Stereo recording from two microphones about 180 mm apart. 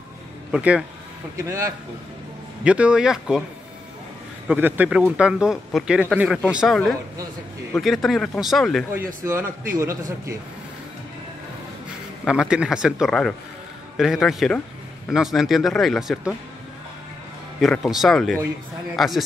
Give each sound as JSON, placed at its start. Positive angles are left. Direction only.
{"t": 0.5, "sound": "speech", "side_deg": -5}
{"t": 1.4, "sound": "a man's voice", "side_deg": -15}
{"t": 4.5, "sound": "speech", "side_deg": -10}
{"t": 8.9, "sound": "a man's voice", "side_deg": -15}
{"t": 12.3, "sound": "speech", "side_deg": -5}
{"t": 17.6, "sound": "speech", "side_deg": 0}